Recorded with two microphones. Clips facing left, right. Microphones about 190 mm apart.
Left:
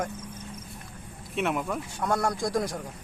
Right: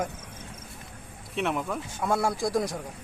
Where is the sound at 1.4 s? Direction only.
Centre (ahead or behind).